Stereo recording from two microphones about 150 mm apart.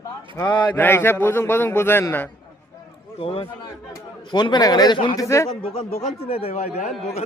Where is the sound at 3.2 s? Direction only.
40° left (ahead or behind); by 5.5 s 20° left (ahead or behind).